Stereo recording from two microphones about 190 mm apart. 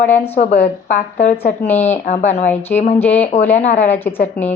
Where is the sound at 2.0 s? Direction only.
35° left (ahead or behind).